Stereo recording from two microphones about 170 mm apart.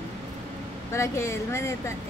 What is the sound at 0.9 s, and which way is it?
Speech, 15° left (ahead or behind).